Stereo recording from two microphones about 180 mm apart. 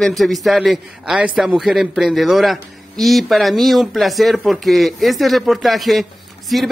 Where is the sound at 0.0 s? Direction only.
Centre (ahead or behind).